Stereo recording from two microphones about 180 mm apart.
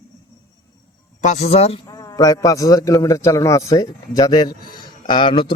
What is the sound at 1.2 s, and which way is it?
Speech, 40° left (ahead or behind).